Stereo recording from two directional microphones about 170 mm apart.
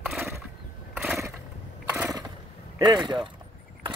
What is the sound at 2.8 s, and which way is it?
Speech, 25° right (ahead or behind).